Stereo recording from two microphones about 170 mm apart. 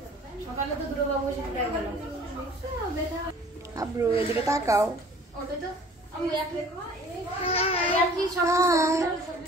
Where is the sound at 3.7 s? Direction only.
20° right (ahead or behind).